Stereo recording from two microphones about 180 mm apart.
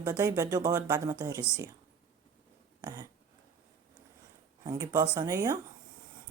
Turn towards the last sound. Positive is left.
turn(degrees=-20)  # may be behind; listen again after turning